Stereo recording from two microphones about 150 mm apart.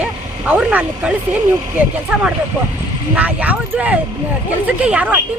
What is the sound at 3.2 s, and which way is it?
Speech, 10° right (ahead or behind).